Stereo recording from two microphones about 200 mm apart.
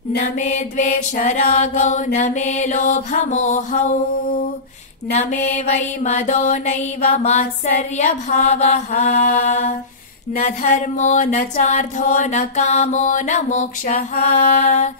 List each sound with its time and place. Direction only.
0.1 s mantra: 40° left (ahead or behind)
5.1 s mantra: 35° left (ahead or behind)